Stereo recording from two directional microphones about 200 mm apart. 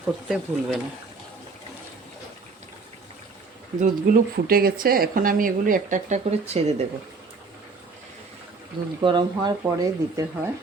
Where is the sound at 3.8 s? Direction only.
45° right (ahead or behind).